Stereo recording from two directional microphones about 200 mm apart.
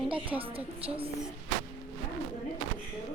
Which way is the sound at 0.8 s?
30° right (ahead or behind).